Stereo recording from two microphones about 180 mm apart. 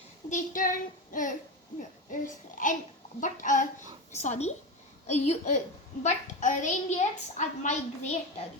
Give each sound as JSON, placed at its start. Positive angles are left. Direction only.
{"t": 0.3, "sound": "child singing", "side_deg": 45}
{"t": 2.0, "sound": "babbling", "side_deg": 45}
{"t": 3.2, "sound": "a child's voice", "side_deg": 45}